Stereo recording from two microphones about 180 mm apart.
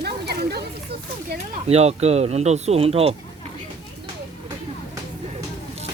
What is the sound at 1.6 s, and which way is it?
Speech, 35° right (ahead or behind).